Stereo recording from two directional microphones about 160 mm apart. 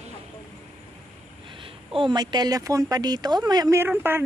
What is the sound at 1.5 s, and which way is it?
A man's voice, 35° right (ahead or behind).